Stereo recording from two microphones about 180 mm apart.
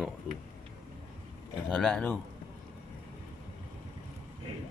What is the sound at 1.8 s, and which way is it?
Speech, 5° left (ahead or behind).